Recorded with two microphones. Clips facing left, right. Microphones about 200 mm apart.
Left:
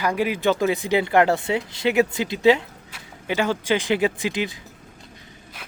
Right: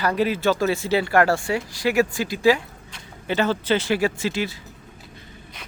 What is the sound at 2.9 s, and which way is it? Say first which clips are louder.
Speech: right 1 dB; 10° left (ahead or behind).